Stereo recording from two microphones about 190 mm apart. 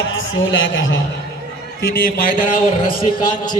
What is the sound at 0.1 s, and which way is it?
Speech, 70° left (ahead or behind).